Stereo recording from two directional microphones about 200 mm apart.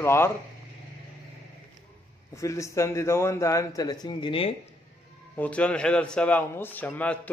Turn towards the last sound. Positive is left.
turn(degrees=5)  # may be behind; listen again after turning